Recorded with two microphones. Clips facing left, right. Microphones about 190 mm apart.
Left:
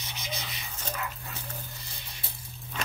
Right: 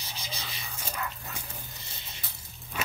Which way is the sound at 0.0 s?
30° right (ahead or behind).